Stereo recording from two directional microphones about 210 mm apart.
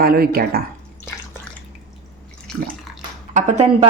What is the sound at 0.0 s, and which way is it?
Speech, 45° right (ahead or behind).